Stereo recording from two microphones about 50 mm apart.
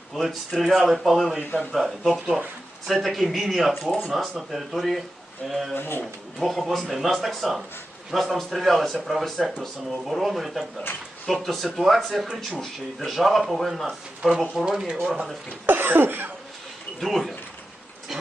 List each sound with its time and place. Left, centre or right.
0.1 s speech: centre
2.1 s speech: centre
2.8 s speech: centre
5.7 s speech: left
6.4 s speech: centre
14.6 s speech: centre
15.6 s cough: right
17.0 s speech: centre